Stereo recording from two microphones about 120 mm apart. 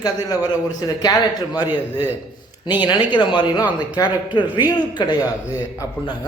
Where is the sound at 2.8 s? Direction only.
40° left (ahead or behind).